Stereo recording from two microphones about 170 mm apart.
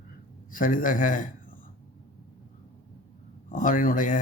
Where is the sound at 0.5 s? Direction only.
50° left (ahead or behind).